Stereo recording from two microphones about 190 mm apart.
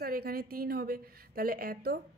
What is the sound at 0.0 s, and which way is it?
A woman's voice, 50° right (ahead or behind).